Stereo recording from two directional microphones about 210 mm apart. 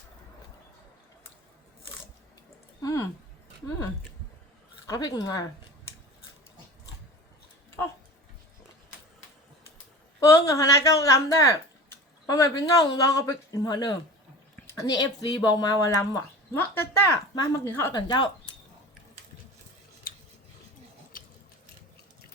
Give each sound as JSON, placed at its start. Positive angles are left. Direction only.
{"t": 2.8, "sound": "a sound", "side_deg": 15}
{"t": 4.9, "sound": "speech", "side_deg": 20}
{"t": 10.2, "sound": "speech", "side_deg": 15}